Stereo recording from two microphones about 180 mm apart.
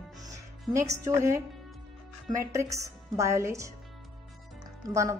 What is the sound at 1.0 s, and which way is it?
Speech, 15° right (ahead or behind).